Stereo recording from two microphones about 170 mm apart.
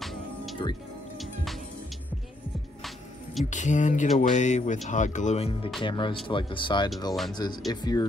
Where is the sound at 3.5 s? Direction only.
45° left (ahead or behind).